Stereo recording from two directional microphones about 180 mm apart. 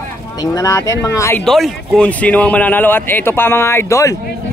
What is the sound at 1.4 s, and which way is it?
A man's voice, centre (ahead or behind).